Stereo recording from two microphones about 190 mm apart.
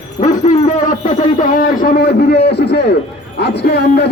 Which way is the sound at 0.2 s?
40° left (ahead or behind).